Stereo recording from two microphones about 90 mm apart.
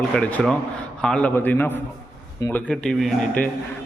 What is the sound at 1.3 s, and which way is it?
Speech, 20° left (ahead or behind).